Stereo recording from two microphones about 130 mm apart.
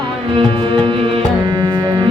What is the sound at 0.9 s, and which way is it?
Music, 35° right (ahead or behind).